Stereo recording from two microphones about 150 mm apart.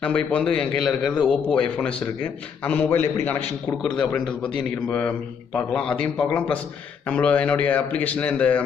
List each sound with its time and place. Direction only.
0.0 s a man's voice: 5° left (ahead or behind)